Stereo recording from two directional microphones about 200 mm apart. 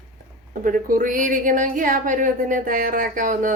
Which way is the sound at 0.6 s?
45° right (ahead or behind).